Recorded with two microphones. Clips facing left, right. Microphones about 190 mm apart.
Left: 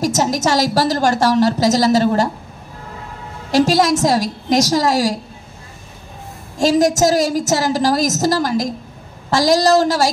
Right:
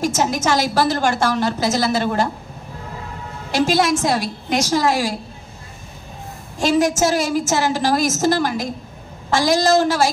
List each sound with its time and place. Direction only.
0.0 s a woman's voice: 40° left (ahead or behind)
3.5 s a woman's voice: 40° left (ahead or behind)
6.6 s a woman's voice: 40° left (ahead or behind)